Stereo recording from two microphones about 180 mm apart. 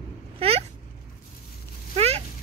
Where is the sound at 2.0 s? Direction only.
35° right (ahead or behind).